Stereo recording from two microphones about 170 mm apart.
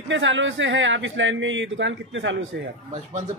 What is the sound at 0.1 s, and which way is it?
Speech, 90° right.